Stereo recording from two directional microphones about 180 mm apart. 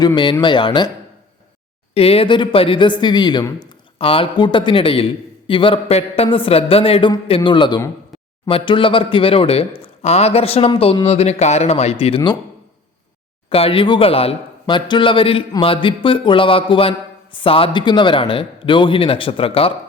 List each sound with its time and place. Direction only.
0.0 s speech: 25° left (ahead or behind)
1.9 s a man's voice: 35° left (ahead or behind)
13.5 s speech: 30° left (ahead or behind)